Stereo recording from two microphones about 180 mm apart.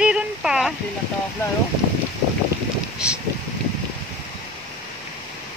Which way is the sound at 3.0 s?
5° right (ahead or behind).